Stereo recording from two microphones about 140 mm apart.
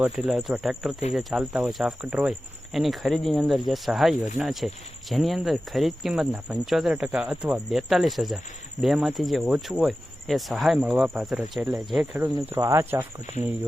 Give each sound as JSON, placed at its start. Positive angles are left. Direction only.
{"t": 0.0, "sound": "speech", "side_deg": 0}
{"t": 12.2, "sound": "speech", "side_deg": -15}